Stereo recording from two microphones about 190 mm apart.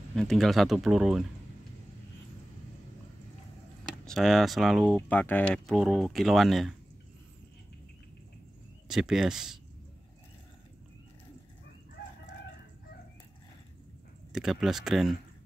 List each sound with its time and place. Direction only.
0.1 s speech: 5° left (ahead or behind)
4.0 s speech: centre (ahead or behind)
8.8 s speech: 5° right (ahead or behind)
14.3 s speech: centre (ahead or behind)